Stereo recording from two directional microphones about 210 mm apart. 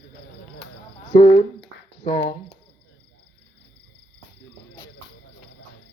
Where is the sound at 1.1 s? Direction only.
30° left (ahead or behind).